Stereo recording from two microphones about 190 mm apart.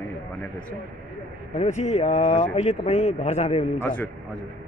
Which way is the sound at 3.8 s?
10° left (ahead or behind).